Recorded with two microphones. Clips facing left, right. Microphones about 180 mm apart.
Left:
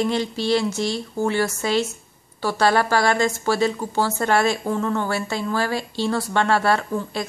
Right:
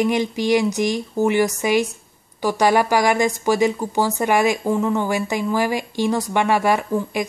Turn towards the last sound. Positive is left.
turn(degrees=-15)  # may be behind; listen again after turning